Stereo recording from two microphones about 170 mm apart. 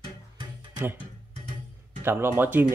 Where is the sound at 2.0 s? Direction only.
15° right (ahead or behind).